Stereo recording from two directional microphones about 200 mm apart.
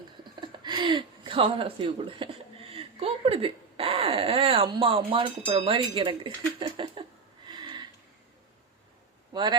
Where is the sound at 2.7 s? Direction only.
30° right (ahead or behind).